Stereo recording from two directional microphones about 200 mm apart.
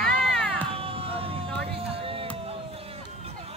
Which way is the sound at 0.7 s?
30° right (ahead or behind).